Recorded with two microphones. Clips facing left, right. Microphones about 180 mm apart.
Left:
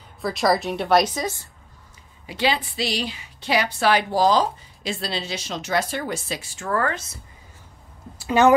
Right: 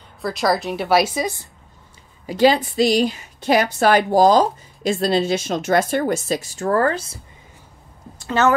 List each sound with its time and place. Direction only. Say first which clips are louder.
0.2 s a woman's voice: right 1 dB; centre (ahead or behind); by 1.5 s 15° right (ahead or behind)
2.2 s a woman's voice: right 8 dB; 40° right (ahead or behind)
8.2 s a woman's voice: left 2 dB; 15° left (ahead or behind)